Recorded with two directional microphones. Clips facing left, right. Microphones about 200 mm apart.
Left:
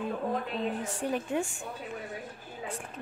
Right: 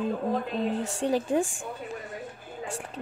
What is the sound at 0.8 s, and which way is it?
Speech, 75° right (ahead or behind).